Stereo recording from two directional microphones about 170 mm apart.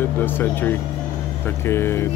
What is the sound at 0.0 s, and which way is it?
Speech, 10° left (ahead or behind).